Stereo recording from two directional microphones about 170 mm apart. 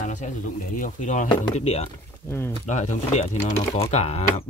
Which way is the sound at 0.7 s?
50° left (ahead or behind).